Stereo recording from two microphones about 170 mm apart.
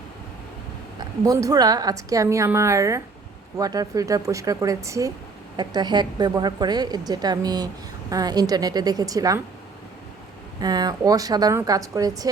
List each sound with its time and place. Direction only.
0.9 s a woman's voice: 20° right (ahead or behind)
10.6 s a woman's voice: 25° right (ahead or behind)